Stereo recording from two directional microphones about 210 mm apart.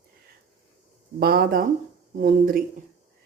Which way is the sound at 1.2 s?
45° right (ahead or behind).